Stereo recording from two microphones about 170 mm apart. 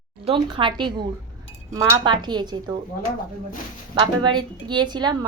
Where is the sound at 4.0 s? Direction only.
25° right (ahead or behind).